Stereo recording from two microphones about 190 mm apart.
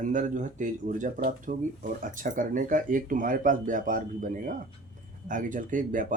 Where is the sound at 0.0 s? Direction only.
40° right (ahead or behind).